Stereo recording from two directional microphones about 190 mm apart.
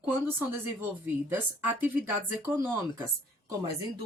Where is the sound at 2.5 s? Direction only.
15° right (ahead or behind).